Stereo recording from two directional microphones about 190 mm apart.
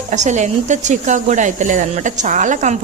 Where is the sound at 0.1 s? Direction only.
40° right (ahead or behind).